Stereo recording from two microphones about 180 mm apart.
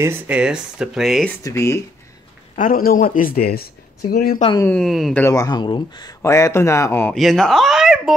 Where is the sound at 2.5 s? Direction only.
50° left (ahead or behind).